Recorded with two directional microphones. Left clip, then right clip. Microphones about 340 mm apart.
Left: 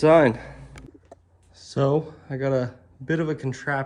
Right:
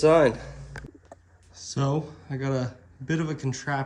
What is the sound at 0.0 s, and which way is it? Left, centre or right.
Speech, left.